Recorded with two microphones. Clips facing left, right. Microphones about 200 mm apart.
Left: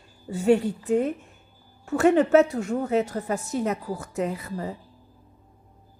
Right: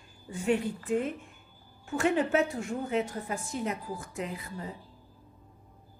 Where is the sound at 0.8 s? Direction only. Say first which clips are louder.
Left 7 dB; 40° left (ahead or behind).